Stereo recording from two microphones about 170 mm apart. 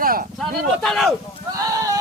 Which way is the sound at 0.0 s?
55° right (ahead or behind).